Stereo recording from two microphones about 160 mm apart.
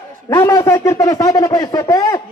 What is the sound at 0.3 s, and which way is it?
A man's voice, 20° left (ahead or behind).